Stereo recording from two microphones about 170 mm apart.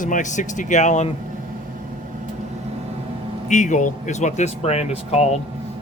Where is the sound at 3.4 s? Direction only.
45° left (ahead or behind).